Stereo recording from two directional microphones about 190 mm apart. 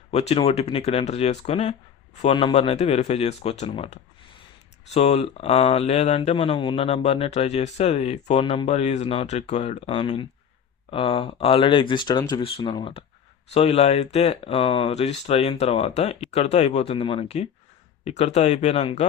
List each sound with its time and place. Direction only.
0.1 s speech: 35° left (ahead or behind)